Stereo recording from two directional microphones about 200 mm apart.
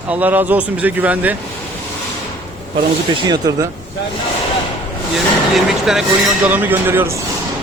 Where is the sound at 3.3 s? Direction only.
20° right (ahead or behind).